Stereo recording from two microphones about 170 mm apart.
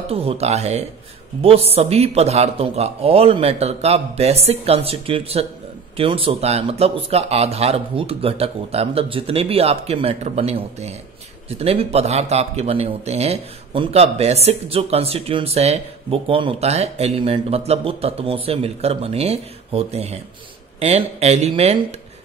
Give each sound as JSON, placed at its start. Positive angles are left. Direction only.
{"t": 0.1, "sound": "a man's voice", "side_deg": -35}